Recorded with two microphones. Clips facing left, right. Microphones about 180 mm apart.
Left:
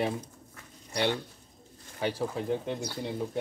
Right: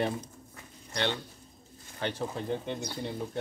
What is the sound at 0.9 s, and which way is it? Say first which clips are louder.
Speech: left 3 dB; 10° left (ahead or behind).